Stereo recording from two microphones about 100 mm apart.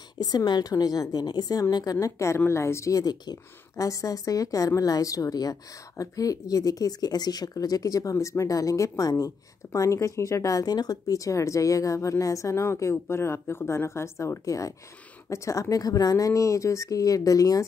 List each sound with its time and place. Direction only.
0.2 s a woman's voice: 40° left (ahead or behind)